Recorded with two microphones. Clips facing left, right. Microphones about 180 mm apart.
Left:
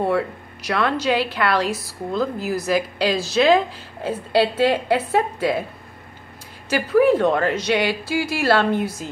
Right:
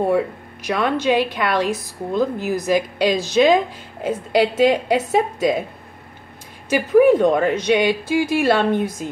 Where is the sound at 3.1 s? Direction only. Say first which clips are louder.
Right 2 dB; 35° left (ahead or behind).